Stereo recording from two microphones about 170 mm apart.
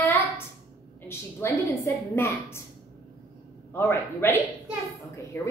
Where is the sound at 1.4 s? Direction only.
15° left (ahead or behind).